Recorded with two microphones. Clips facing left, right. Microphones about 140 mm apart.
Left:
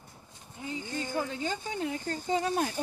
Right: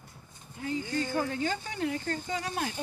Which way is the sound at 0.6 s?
20° left (ahead or behind).